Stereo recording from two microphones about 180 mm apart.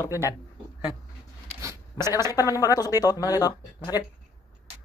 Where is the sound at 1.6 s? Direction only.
15° right (ahead or behind).